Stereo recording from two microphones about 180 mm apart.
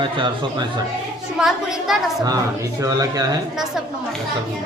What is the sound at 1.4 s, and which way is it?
Speech, centre (ahead or behind).